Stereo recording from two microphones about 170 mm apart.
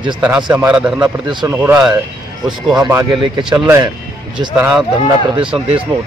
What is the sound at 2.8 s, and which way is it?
Speech, 25° right (ahead or behind).